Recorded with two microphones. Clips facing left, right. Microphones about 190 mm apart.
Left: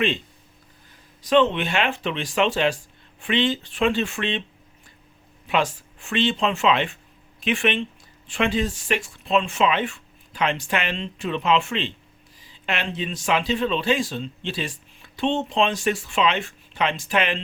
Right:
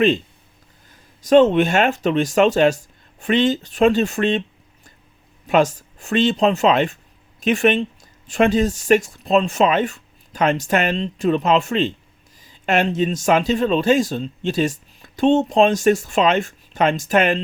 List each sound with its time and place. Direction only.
1.2 s a man's voice: 45° right (ahead or behind)
5.5 s a man's voice: 45° right (ahead or behind)